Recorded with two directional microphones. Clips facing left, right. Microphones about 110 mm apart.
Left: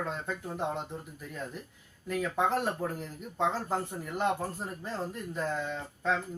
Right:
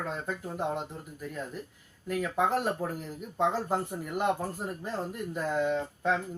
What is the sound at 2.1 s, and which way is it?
Speech, 5° right (ahead or behind).